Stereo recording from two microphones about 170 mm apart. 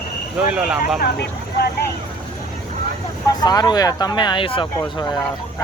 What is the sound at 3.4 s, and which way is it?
Speech, 25° left (ahead or behind).